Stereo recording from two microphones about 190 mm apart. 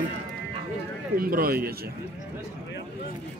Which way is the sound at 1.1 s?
50° right (ahead or behind).